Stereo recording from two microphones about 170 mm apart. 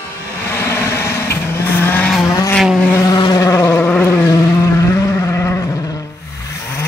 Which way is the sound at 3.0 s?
25° left (ahead or behind).